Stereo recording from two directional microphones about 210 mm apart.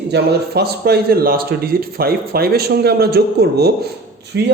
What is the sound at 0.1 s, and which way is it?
A man's voice, 50° right (ahead or behind).